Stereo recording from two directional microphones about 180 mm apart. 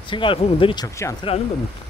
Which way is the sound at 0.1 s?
30° left (ahead or behind).